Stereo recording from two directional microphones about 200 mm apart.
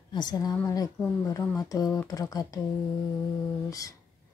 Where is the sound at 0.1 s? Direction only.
20° left (ahead or behind).